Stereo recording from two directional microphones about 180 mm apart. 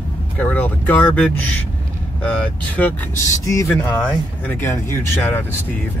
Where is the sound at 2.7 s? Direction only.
15° left (ahead or behind).